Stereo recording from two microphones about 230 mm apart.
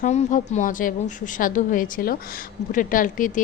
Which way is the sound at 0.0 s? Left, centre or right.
Left.